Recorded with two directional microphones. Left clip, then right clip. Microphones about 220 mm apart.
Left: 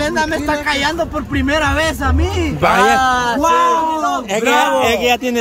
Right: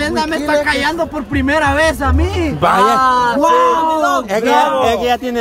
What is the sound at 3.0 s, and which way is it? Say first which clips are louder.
Speech: right 2 dB; 35° left (ahead or behind).